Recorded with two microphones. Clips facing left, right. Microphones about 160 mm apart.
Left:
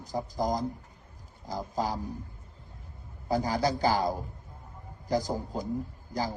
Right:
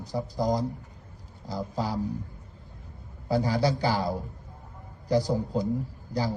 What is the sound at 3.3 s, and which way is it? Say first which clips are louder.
A man's voice: right 2 dB; 45° left (ahead or behind).